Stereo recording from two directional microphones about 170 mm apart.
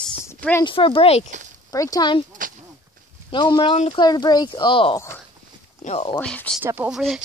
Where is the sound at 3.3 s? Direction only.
30° left (ahead or behind).